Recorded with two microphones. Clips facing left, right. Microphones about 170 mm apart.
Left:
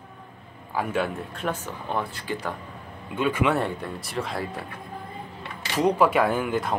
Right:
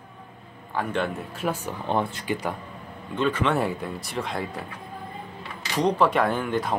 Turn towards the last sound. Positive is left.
turn(degrees=0)  # may be behind; listen again after turning